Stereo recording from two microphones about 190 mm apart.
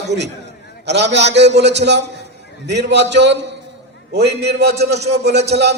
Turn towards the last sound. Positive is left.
turn(degrees=-60)  # may be behind; listen again after turning